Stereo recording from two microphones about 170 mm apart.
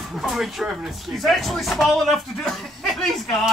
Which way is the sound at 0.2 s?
Centre (ahead or behind).